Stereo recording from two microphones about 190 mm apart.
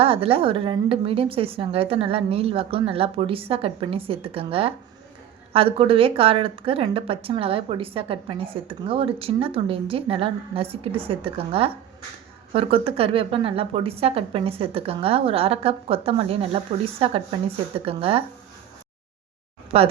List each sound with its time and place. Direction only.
0.0 s a woman's voice: 30° right (ahead or behind)
19.7 s a woman's voice: 30° right (ahead or behind)